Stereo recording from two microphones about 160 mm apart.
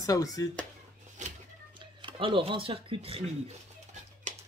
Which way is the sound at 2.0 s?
30° right (ahead or behind).